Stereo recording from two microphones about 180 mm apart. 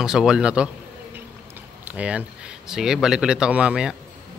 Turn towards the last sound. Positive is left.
turn(degrees=-5)  # may be behind; listen again after turning